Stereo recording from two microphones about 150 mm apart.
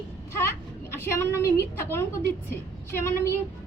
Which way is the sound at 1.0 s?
15° left (ahead or behind).